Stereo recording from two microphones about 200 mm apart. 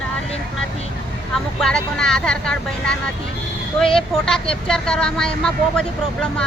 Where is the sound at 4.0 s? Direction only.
5° left (ahead or behind).